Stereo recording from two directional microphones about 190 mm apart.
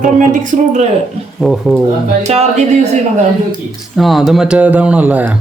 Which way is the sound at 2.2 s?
35° right (ahead or behind).